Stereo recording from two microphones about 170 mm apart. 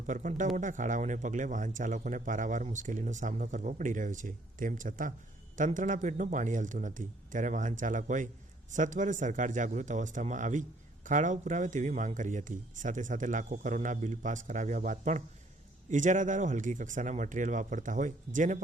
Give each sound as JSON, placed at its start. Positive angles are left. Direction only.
{"t": 0.0, "sound": "a man's voice", "side_deg": -50}